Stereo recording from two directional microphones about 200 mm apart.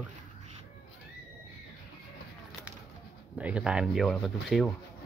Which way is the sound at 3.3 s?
5° right (ahead or behind).